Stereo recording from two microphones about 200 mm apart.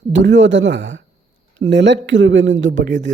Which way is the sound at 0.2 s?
65° right (ahead or behind).